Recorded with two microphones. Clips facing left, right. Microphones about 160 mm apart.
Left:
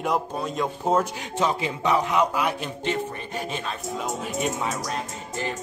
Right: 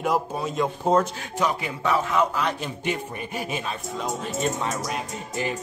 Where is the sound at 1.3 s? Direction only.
25° left (ahead or behind).